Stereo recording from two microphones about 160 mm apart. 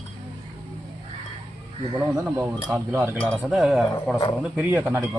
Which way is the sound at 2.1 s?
15° right (ahead or behind).